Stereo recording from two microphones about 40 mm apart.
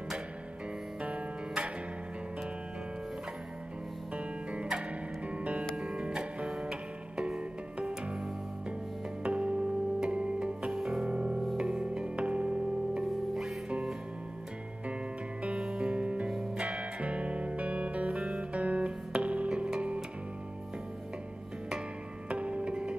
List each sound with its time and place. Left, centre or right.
1.0 s music: right
4.5 s music: right
9.2 s music: right
10.7 s music: centre
11.1 s music: right
15.4 s music: right
22.3 s music: right